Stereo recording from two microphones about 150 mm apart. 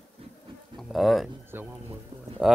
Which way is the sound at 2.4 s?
5° right (ahead or behind).